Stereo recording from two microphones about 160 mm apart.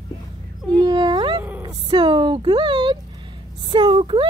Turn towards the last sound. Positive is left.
turn(degrees=-30)  # may be behind; listen again after turning